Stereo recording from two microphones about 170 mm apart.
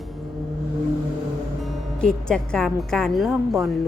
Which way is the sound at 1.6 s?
Centre (ahead or behind).